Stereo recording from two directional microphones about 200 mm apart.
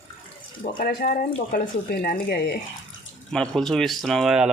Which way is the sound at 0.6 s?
45° left (ahead or behind).